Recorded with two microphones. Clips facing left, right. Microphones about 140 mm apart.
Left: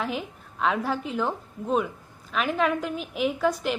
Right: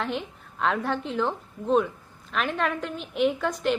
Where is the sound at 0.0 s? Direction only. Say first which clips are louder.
Even; 5° left (ahead or behind).